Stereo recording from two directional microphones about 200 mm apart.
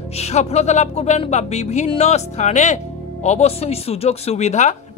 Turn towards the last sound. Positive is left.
turn(degrees=35)  # may be behind; listen again after turning